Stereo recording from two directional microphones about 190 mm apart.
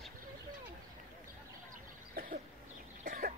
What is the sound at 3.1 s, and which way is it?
Cough, 50° right (ahead or behind).